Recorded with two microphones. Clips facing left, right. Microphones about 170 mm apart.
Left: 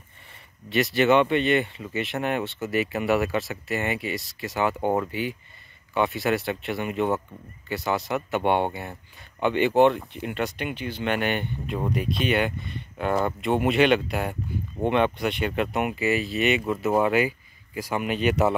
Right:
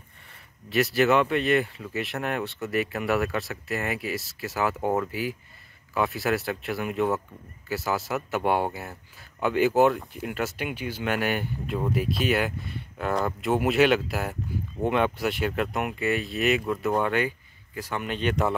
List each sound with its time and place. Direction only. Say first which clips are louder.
0.7 s speech: left 1 dB; centre (ahead or behind)